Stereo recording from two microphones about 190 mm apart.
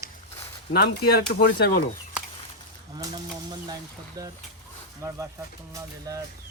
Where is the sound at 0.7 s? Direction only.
55° left (ahead or behind).